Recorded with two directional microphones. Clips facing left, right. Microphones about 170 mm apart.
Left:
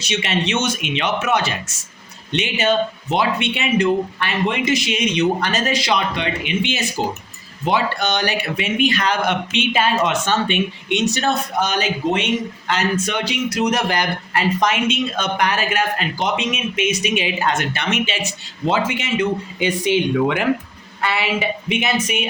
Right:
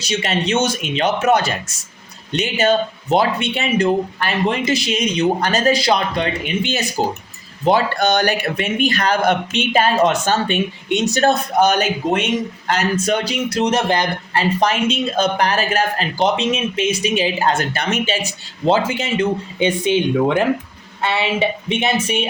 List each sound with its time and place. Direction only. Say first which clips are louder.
0.0 s speech: right 1 dB; 35° right (ahead or behind)
21.0 s a woman's voice: right 3 dB; 25° right (ahead or behind)